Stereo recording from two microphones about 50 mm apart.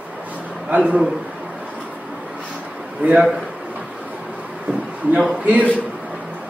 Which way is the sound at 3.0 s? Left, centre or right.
Right.